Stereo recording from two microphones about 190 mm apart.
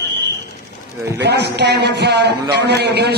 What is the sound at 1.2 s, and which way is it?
A man's voice, 65° right (ahead or behind).